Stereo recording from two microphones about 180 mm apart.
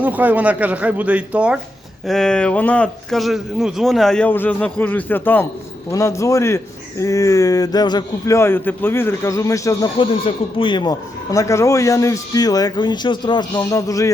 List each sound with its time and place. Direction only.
0.0 s speech: 10° right (ahead or behind); by 9.9 s 20° left (ahead or behind)
10.0 s speech: 30° left (ahead or behind)